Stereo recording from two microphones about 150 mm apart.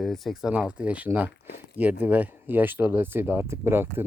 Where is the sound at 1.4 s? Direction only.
80° left.